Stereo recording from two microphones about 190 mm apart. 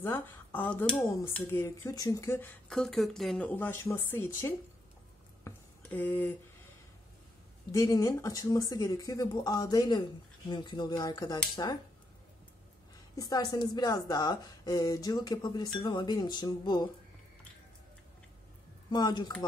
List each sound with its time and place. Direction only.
0.0 s speech: 10° left (ahead or behind)
5.4 s a sound: 10° left (ahead or behind)
7.7 s a woman's voice: 15° left (ahead or behind)
13.1 s a woman's voice: 20° left (ahead or behind)
18.9 s a woman's voice: 20° left (ahead or behind)